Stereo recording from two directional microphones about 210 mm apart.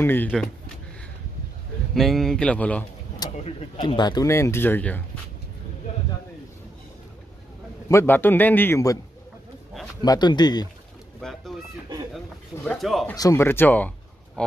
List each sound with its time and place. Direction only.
0.0 s speech: 10° left (ahead or behind)
2.0 s speech: centre (ahead or behind)
3.2 s speech: 25° left (ahead or behind); by 5.2 s 10° left (ahead or behind)
7.9 s speech: 10° left (ahead or behind)
10.0 s speech: 20° left (ahead or behind)
11.1 s chicken: centre (ahead or behind)
12.6 s speech: centre (ahead or behind)
13.1 s speech: 15° left (ahead or behind)